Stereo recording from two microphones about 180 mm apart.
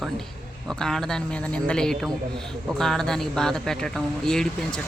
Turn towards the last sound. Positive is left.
turn(degrees=5)  # may be behind; listen again after turning